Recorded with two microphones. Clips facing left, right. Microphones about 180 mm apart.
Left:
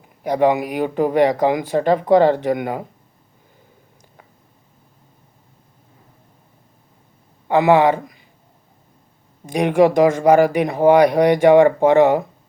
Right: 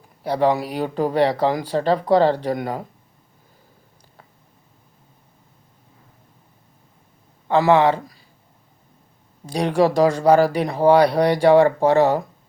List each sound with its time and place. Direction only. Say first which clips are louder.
0.2 s speech: left 3 dB; 15° left (ahead or behind)
7.4 s speech: left 2 dB; 15° left (ahead or behind)
9.5 s speech: left 4 dB; 15° left (ahead or behind)